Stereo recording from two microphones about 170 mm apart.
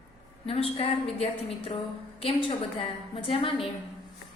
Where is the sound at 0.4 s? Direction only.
35° left (ahead or behind).